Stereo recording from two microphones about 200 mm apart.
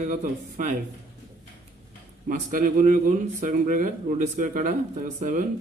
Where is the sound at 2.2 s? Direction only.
40° right (ahead or behind).